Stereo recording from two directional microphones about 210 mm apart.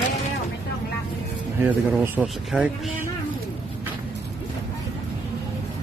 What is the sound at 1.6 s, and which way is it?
Speech, 10° right (ahead or behind).